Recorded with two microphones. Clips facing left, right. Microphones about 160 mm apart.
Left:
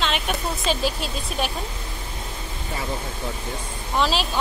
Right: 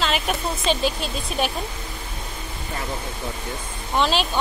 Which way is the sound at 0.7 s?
5° left (ahead or behind).